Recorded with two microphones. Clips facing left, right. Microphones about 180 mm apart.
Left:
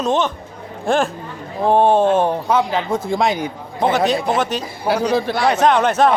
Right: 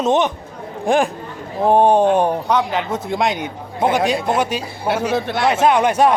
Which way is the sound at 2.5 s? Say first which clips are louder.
Left 1 dB; centre (ahead or behind).